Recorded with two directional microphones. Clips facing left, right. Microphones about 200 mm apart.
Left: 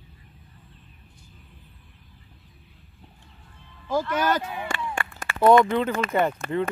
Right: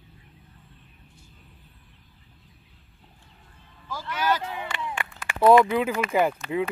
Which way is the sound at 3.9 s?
50° left (ahead or behind).